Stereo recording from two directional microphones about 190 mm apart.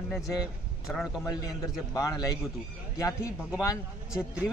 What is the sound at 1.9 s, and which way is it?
Speech, 15° left (ahead or behind).